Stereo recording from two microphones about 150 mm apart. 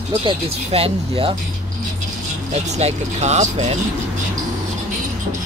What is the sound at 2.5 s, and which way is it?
Speech, 45° right (ahead or behind).